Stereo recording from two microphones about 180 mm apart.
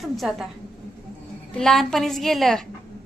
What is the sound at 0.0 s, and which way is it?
Speech, centre (ahead or behind).